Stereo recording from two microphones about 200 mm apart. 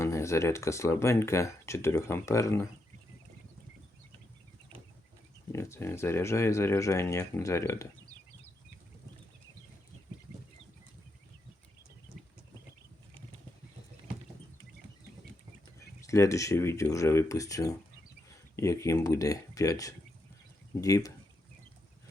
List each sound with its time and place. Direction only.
0.0 s speech: 15° left (ahead or behind)
5.5 s speech: 15° left (ahead or behind)
16.0 s speech: 15° left (ahead or behind)